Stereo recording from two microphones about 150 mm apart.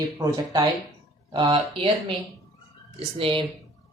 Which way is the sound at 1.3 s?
35° right (ahead or behind).